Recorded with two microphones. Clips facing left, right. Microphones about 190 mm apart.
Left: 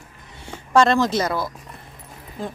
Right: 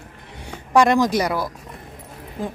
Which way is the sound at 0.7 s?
15° right (ahead or behind).